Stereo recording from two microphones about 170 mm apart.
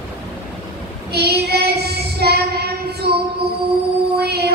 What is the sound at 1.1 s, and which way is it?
Child singing, 70° right (ahead or behind).